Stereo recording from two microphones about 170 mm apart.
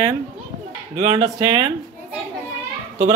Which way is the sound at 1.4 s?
30° right (ahead or behind).